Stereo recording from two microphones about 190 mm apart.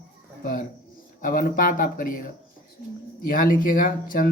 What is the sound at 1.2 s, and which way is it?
A man's voice, 45° left (ahead or behind).